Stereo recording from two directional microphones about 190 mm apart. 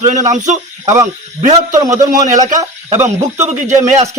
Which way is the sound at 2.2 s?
40° right (ahead or behind).